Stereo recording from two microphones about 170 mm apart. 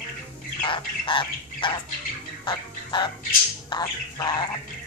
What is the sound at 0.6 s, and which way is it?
Bird, 30° left (ahead or behind).